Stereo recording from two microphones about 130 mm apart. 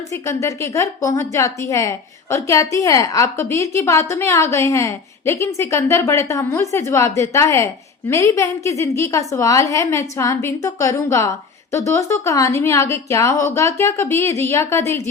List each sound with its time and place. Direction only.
0.1 s a woman's voice: 25° left (ahead or behind)